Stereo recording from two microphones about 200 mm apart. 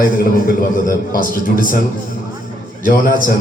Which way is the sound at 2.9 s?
45° left (ahead or behind).